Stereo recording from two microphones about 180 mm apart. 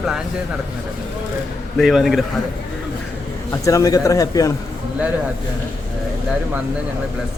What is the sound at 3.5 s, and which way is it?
Speech, 20° left (ahead or behind).